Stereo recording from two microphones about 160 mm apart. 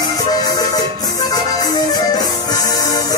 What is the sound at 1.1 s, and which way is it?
Music, 25° left (ahead or behind).